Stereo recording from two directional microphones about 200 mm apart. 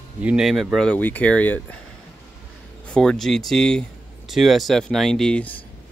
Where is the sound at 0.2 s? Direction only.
5° right (ahead or behind).